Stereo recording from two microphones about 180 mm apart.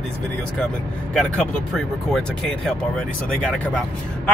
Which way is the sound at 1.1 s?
5° left (ahead or behind).